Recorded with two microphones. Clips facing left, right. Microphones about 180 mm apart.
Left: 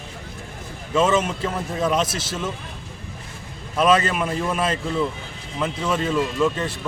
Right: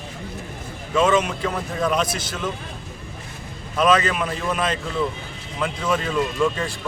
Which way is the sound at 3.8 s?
5° left (ahead or behind).